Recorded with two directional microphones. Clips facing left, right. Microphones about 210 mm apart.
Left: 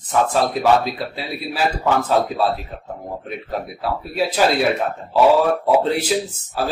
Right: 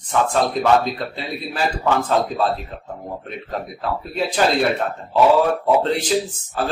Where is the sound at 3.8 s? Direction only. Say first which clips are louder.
Left 2 dB; 10° left (ahead or behind).